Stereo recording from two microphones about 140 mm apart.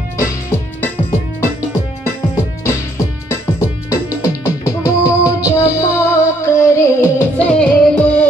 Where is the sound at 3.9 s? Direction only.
25° left (ahead or behind).